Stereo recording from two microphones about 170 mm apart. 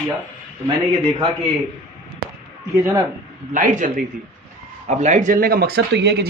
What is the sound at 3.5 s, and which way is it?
Speech, 45° right (ahead or behind).